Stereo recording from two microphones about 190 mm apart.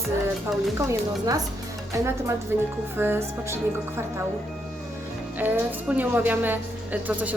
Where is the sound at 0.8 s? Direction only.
15° right (ahead or behind).